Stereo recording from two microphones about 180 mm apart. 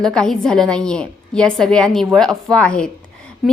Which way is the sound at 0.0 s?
5° left (ahead or behind).